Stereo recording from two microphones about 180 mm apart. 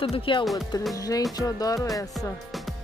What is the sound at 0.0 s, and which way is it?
Speech, 30° left (ahead or behind).